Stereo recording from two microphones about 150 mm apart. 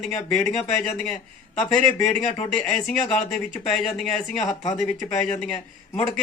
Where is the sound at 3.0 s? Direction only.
45° left (ahead or behind).